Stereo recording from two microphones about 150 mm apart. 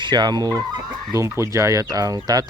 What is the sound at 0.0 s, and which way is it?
Speech, 30° right (ahead or behind).